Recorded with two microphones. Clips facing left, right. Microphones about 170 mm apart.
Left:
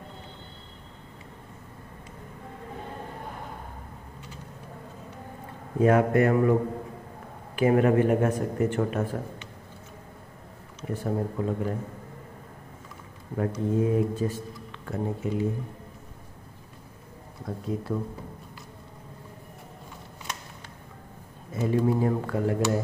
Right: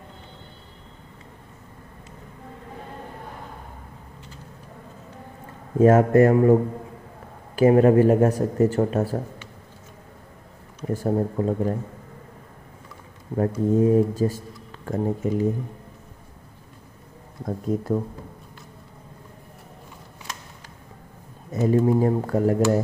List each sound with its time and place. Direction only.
5.8 s speech: 40° right (ahead or behind)
7.5 s speech: 35° right (ahead or behind)
10.9 s speech: 40° right (ahead or behind)
13.4 s speech: 35° right (ahead or behind)
17.5 s speech: 45° right (ahead or behind)
21.5 s speech: 40° right (ahead or behind)